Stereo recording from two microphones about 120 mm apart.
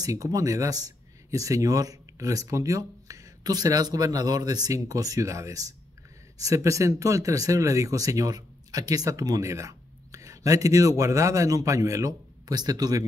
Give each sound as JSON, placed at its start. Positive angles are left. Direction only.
{"t": 0.0, "sound": "speech", "side_deg": -30}